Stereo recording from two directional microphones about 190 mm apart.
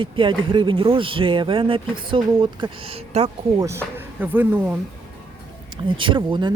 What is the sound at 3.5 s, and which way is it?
Speech, 15° right (ahead or behind).